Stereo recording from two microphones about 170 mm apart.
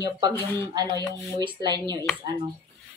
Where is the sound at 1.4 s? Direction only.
30° right (ahead or behind).